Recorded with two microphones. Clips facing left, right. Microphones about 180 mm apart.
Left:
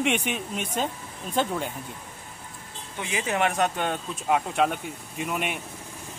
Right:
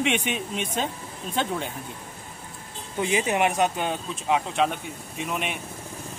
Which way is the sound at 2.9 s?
25° right (ahead or behind).